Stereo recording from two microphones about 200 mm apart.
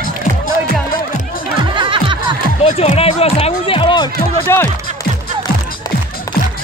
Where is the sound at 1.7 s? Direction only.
25° right (ahead or behind).